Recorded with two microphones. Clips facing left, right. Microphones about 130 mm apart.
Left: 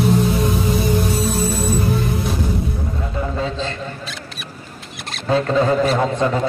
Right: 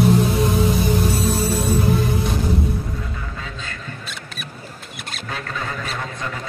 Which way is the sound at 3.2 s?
30° left (ahead or behind).